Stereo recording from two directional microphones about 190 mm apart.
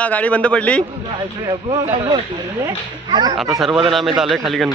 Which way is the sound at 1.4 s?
25° right (ahead or behind).